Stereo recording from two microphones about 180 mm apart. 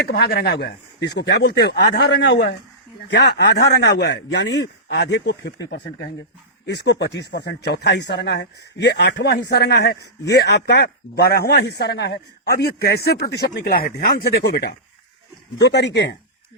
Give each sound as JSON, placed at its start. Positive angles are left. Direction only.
{"t": 0.1, "sound": "speech", "side_deg": 60}
{"t": 15.5, "sound": "speech", "side_deg": 70}